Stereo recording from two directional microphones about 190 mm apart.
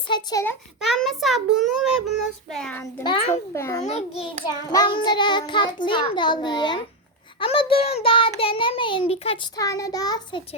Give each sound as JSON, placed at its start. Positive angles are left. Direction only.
{"t": 0.1, "sound": "child singing", "side_deg": 20}
{"t": 0.9, "sound": "a child's voice", "side_deg": 0}
{"t": 3.0, "sound": "child singing", "side_deg": 25}
{"t": 3.5, "sound": "a child's voice", "side_deg": 15}
{"t": 3.8, "sound": "a child's voice", "side_deg": 35}
{"t": 4.4, "sound": "child singing", "side_deg": 20}
{"t": 9.6, "sound": "child singing", "side_deg": 20}